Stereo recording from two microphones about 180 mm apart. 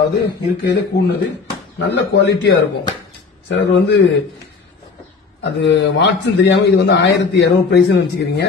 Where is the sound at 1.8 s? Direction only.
80° left.